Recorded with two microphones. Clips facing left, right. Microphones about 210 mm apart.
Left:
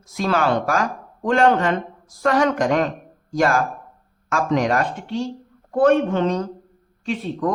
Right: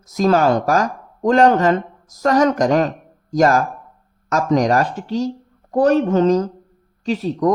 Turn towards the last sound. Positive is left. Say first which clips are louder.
# right 5 dB
turn(degrees=-40)  # may be behind; listen again after turning